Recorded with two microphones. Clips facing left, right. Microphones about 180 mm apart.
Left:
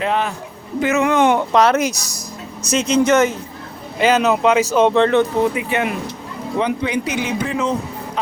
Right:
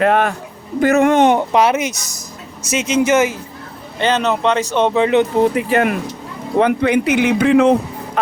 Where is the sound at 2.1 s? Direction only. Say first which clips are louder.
Left 2 dB; 25° right (ahead or behind).